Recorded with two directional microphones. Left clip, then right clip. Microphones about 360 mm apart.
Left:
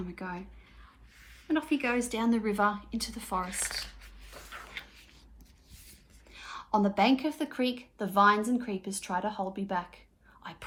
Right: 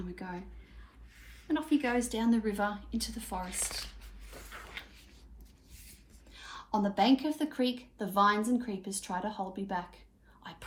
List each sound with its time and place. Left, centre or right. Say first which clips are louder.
0.2 s a woman's voice: left 4 dB; centre
1.7 s a woman's voice: right 2 dB; centre
4.4 s a sound: left 3 dB; centre
6.3 s a woman's voice: left 4 dB; centre